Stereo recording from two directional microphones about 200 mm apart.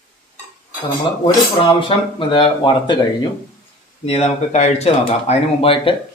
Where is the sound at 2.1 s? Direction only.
25° left (ahead or behind).